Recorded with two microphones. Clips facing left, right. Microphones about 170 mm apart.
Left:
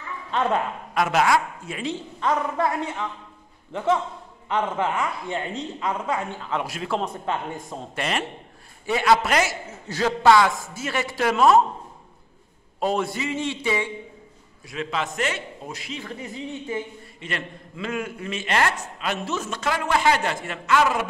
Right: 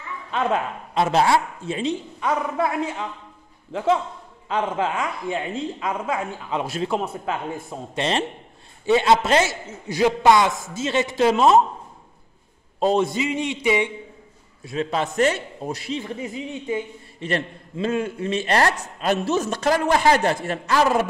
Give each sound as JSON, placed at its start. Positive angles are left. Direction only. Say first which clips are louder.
{"t": 0.9, "sound": "a man's voice", "louder": "right 2 dB", "side_deg": -30}
{"t": 2.1, "sound": "a woman's voice", "louder": "left 2 dB", "side_deg": -10}
{"t": 3.7, "sound": "a woman's voice", "louder": "right 2 dB", "side_deg": -10}
{"t": 6.6, "sound": "a man's voice", "louder": "right 5 dB", "side_deg": -25}
{"t": 6.9, "sound": "a woman's voice", "louder": "right 1 dB", "side_deg": -10}
{"t": 7.9, "sound": "a man's voice", "louder": "right 4 dB", "side_deg": -25}
{"t": 9.8, "sound": "a man's voice", "louder": "right 1 dB", "side_deg": -15}
{"t": 12.8, "sound": "a man's voice", "louder": "right 4 dB", "side_deg": -20}
{"t": 14.9, "sound": "a man's voice", "louder": "right 6 dB", "side_deg": -40}
{"t": 16.0, "sound": "a man's voice", "louder": "right 4 dB", "side_deg": -20}
{"t": 17.2, "sound": "a man's voice", "louder": "right 7 dB", "side_deg": -35}